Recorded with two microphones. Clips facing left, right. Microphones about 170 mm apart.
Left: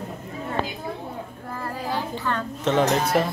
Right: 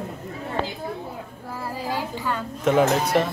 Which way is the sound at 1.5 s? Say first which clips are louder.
Even; 10° right (ahead or behind).